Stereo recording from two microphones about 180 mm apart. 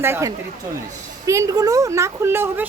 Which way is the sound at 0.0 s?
15° right (ahead or behind).